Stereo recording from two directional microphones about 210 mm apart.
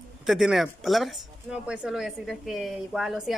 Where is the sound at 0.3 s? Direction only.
Centre (ahead or behind).